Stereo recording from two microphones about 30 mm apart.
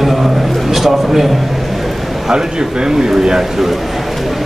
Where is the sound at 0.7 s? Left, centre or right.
Centre.